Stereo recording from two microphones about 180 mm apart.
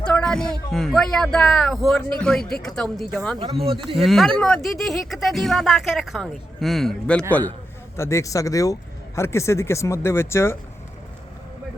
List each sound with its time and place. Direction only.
0.0 s a sound: 5° left (ahead or behind)
0.7 s speech: centre (ahead or behind)
3.3 s speech: 30° right (ahead or behind)
3.9 s speech: centre (ahead or behind)